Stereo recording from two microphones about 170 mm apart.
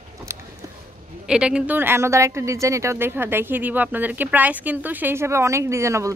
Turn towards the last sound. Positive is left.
turn(degrees=-15)  # may be behind; listen again after turning